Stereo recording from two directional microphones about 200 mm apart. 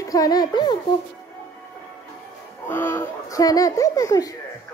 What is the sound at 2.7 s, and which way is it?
Speech, 10° left (ahead or behind).